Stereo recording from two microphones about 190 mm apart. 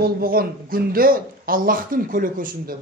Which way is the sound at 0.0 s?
50° right (ahead or behind).